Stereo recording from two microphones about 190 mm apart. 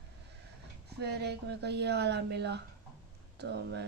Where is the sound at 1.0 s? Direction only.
60° right (ahead or behind).